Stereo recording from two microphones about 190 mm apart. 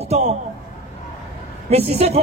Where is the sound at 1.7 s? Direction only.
30° right (ahead or behind).